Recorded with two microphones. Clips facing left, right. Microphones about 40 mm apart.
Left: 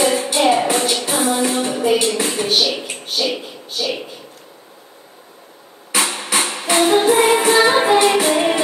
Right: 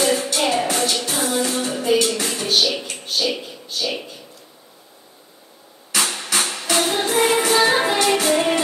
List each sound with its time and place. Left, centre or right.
0.3 s music: left
5.9 s a sound: left
6.1 s music: left